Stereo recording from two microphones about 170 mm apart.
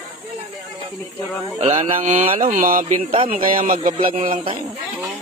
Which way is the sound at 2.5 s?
55° right (ahead or behind).